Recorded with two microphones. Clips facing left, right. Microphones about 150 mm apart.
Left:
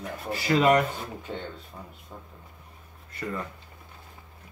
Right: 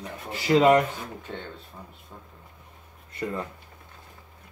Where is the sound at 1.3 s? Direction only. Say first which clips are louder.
Left 2 dB; 10° left (ahead or behind).